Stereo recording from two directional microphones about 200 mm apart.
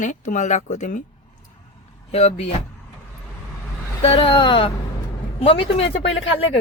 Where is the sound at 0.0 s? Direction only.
40° left (ahead or behind).